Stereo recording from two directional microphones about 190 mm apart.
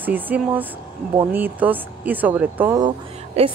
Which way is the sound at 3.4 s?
35° right (ahead or behind).